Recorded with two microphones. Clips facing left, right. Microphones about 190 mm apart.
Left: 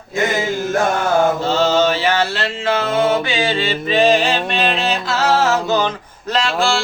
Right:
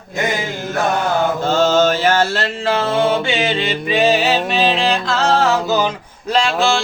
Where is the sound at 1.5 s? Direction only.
50° right (ahead or behind); by 5.9 s 5° right (ahead or behind).